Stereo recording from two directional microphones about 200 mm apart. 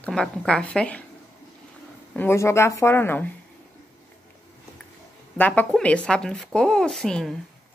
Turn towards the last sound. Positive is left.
turn(degrees=0)  # may be behind; listen again after turning